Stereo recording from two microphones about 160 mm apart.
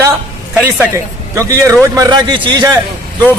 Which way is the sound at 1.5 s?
20° right (ahead or behind).